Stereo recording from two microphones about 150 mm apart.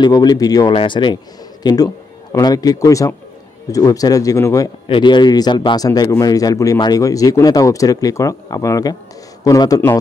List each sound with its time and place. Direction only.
0.0 s a man's voice: 25° left (ahead or behind)
4.8 s a man's voice: 35° left (ahead or behind)